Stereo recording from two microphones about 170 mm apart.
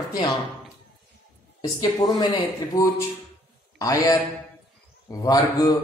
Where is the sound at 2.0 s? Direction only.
25° left (ahead or behind).